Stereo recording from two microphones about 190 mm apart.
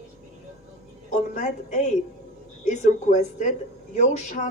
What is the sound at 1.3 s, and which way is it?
A woman's voice, 40° left (ahead or behind).